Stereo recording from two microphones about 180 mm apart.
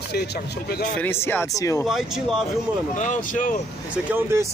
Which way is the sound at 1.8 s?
Centre (ahead or behind).